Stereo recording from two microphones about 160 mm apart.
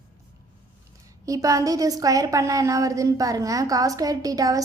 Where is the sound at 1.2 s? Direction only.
20° right (ahead or behind).